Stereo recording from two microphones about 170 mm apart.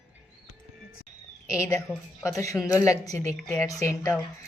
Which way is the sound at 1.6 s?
20° left (ahead or behind).